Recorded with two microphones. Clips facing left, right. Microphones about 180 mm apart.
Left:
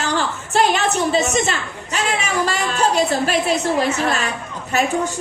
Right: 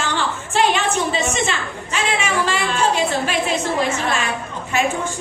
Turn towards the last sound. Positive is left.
turn(degrees=35)  # may be behind; listen again after turning